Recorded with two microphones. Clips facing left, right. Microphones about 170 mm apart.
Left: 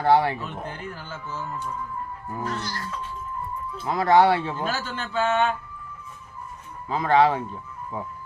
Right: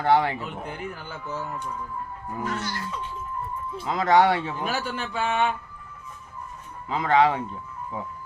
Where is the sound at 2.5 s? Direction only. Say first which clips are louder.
Right 1 dB; 10° right (ahead or behind).